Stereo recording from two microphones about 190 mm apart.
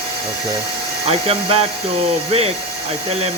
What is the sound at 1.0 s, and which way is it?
Speech, 30° right (ahead or behind).